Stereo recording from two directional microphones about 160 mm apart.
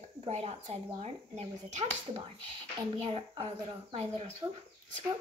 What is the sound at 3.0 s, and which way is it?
Speech, 30° right (ahead or behind).